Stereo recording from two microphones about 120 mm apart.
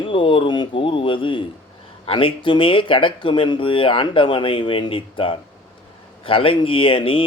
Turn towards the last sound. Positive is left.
turn(degrees=45)  # may be behind; listen again after turning